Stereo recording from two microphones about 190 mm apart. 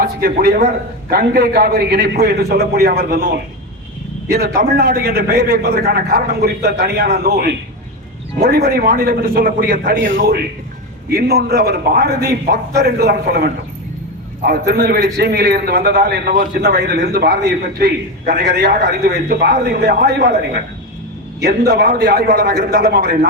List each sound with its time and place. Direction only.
0.0 s a man's voice: 50° right (ahead or behind)
4.3 s a man's voice: 55° right (ahead or behind)